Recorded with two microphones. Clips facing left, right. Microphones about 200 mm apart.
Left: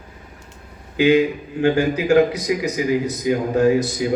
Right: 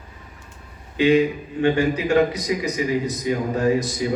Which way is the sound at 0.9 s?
65° left (ahead or behind).